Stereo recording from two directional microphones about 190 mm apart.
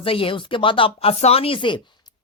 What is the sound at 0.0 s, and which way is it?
Speech, 30° left (ahead or behind).